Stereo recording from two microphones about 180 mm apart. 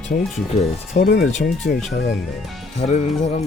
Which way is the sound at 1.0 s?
45° left (ahead or behind).